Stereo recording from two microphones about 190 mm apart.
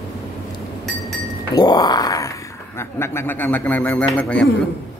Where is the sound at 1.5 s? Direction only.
20° left (ahead or behind); by 4.5 s 5° left (ahead or behind).